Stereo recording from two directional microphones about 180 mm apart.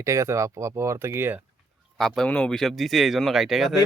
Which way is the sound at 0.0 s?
15° right (ahead or behind).